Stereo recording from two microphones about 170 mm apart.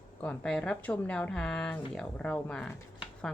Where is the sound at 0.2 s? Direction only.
5° left (ahead or behind).